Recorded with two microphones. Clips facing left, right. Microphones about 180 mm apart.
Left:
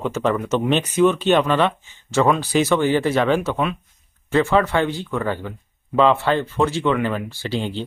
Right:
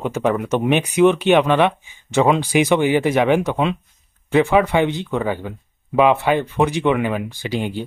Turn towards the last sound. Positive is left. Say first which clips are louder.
# right 1 dB
turn(degrees=-15)  # may be behind; listen again after turning